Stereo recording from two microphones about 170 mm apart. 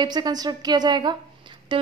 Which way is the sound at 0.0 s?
25° right (ahead or behind).